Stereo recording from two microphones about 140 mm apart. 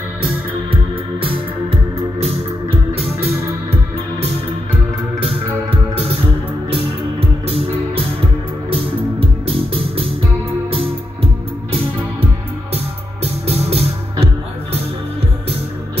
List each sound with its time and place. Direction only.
1.2 s music: 40° right (ahead or behind)
2.9 s music: 45° right (ahead or behind)
6.7 s music: 45° right (ahead or behind)
12.7 s music: 45° right (ahead or behind)